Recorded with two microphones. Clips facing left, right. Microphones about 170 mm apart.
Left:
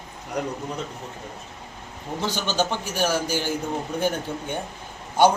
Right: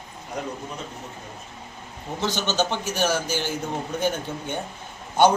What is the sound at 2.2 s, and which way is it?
A man's voice, 10° left (ahead or behind).